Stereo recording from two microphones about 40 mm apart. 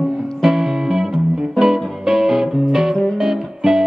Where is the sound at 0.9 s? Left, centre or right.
Centre.